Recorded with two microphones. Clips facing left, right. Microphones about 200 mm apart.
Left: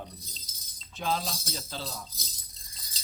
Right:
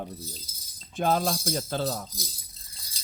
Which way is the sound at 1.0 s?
50° right (ahead or behind).